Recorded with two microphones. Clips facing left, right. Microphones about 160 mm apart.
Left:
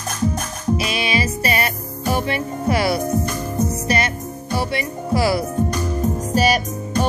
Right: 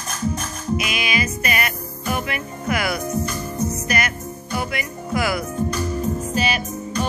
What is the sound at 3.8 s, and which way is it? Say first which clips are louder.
Speech: left 3 dB; 30° left (ahead or behind).